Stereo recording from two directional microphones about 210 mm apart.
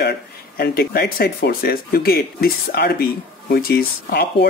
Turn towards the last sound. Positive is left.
turn(degrees=45)  # may be behind; listen again after turning